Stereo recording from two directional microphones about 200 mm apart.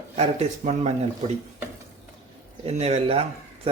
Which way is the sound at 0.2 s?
35° right (ahead or behind).